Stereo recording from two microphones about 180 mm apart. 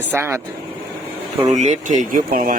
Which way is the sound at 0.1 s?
15° right (ahead or behind).